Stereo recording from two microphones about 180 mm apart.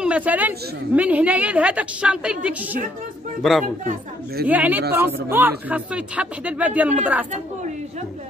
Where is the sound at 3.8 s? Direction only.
60° right (ahead or behind).